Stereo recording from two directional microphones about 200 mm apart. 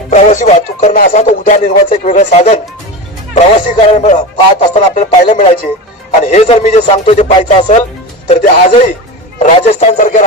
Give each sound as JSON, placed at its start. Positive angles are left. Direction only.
{"t": 0.1, "sound": "speech", "side_deg": 35}